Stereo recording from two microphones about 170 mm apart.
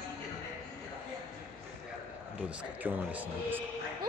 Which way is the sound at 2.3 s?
5° right (ahead or behind).